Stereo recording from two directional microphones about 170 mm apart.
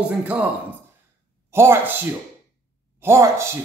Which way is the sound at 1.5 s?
15° right (ahead or behind).